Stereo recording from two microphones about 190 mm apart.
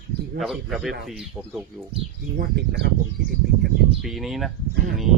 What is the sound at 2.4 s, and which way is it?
Speech, 60° right (ahead or behind).